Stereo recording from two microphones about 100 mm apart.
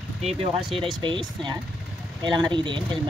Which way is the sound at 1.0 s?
50° right (ahead or behind).